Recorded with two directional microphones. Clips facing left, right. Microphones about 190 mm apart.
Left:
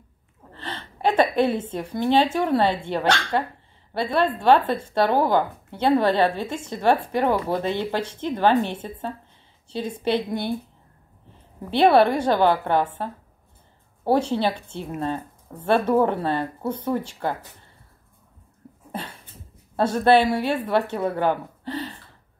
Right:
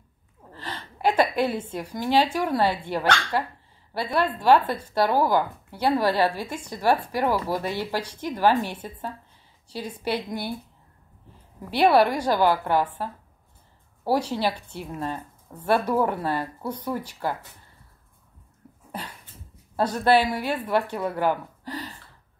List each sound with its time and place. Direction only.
0.5 s a woman's voice: 25° left (ahead or behind)
11.7 s speech: 25° left (ahead or behind)
18.9 s dog: 25° left (ahead or behind)
19.8 s speech: 25° left (ahead or behind)